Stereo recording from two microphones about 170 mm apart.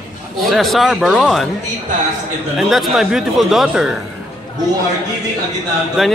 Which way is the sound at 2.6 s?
Centre (ahead or behind).